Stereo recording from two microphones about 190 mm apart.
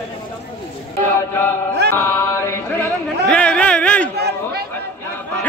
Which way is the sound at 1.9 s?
15° left (ahead or behind).